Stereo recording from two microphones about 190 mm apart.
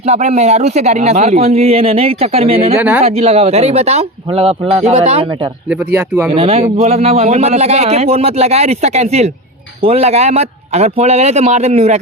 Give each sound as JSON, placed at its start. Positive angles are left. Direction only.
{"t": 0.1, "sound": "speech", "side_deg": -35}
{"t": 2.7, "sound": "speech", "side_deg": -5}
{"t": 3.0, "sound": "speech", "side_deg": -35}
{"t": 6.3, "sound": "speech", "side_deg": -30}